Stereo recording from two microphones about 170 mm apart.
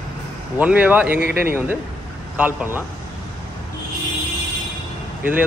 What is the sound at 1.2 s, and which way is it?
Speech, 70° right (ahead or behind).